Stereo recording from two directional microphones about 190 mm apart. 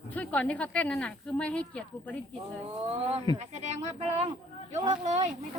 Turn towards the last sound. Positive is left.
turn(degrees=-40)  # may be behind; listen again after turning